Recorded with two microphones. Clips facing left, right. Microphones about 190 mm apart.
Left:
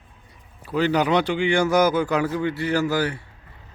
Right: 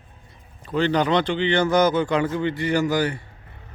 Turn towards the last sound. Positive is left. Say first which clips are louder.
# right 1 dB
turn(degrees=5)  # may be behind; listen again after turning